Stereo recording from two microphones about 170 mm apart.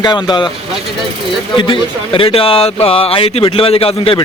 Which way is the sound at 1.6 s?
30° left (ahead or behind).